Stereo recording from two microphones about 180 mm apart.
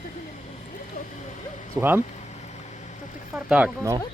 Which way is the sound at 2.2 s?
40° left (ahead or behind).